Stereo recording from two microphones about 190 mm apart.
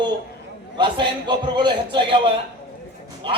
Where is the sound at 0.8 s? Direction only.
25° right (ahead or behind).